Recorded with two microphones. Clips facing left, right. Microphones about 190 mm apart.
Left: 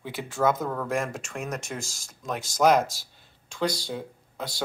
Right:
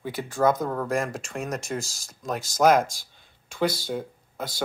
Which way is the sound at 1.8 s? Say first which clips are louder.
Even; 35° right (ahead or behind).